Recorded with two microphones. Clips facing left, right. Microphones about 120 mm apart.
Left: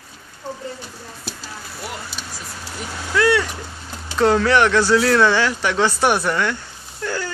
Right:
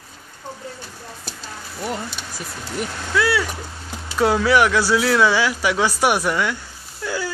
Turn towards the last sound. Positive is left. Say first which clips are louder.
# even
turn(degrees=-10)  # may be behind; listen again after turning